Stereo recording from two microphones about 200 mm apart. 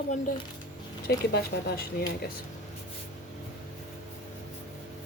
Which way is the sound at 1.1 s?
50° left (ahead or behind).